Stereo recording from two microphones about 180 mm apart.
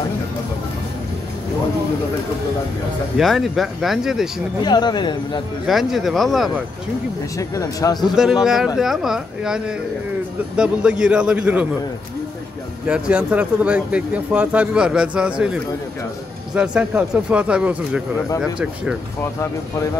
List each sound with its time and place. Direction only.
3.2 s speech: centre (ahead or behind)
4.6 s speech: 25° left (ahead or behind)
5.7 s speech: centre (ahead or behind)
7.3 s speech: 20° left (ahead or behind)
8.0 s speech: 5° right (ahead or behind)
12.8 s speech: 5° right (ahead or behind)